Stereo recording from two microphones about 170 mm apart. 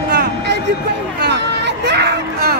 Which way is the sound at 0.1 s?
65° right (ahead or behind).